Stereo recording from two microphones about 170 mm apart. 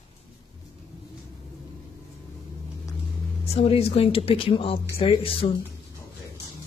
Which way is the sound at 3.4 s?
35° left (ahead or behind).